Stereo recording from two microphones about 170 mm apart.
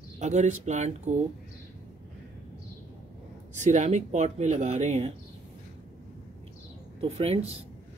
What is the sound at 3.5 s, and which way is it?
Speech, 45° right (ahead or behind).